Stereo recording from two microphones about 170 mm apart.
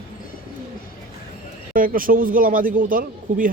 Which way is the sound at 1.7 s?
55° right (ahead or behind).